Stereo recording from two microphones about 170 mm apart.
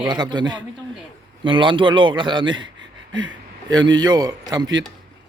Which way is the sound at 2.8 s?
90° right.